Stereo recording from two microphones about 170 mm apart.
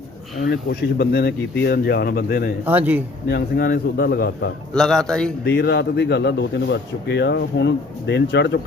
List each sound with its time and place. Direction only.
0.4 s speech: 70° left (ahead or behind)
2.6 s a man's voice: 10° right (ahead or behind)
3.2 s a man's voice: 70° left (ahead or behind)
4.7 s a man's voice: 5° left (ahead or behind)
5.5 s a man's voice: 80° left